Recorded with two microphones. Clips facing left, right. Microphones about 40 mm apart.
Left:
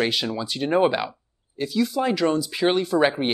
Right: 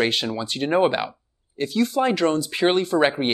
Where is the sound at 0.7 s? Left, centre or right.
Centre.